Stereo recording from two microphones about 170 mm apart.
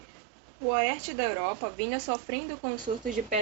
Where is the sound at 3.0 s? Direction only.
50° right (ahead or behind).